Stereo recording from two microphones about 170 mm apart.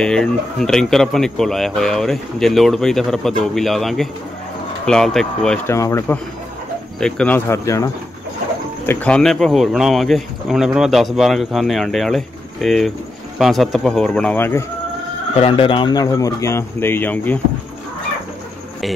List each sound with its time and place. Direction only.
0.0 s speech: 5° left (ahead or behind)
5.7 s speech: 20° left (ahead or behind)
7.0 s speech: 5° left (ahead or behind)
8.8 s speech: 5° left (ahead or behind)
15.3 s speech: 30° left (ahead or behind); by 17.4 s 10° left (ahead or behind)